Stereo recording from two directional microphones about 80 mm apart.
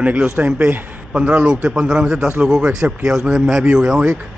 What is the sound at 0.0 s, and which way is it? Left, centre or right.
A man's voice, centre.